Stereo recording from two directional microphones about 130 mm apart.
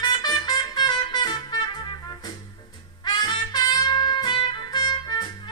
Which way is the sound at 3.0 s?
35° left (ahead or behind).